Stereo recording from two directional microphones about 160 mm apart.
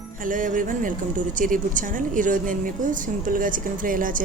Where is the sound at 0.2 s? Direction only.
55° right (ahead or behind).